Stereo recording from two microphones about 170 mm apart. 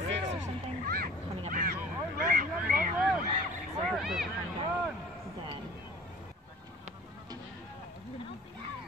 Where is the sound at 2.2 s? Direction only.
55° right (ahead or behind).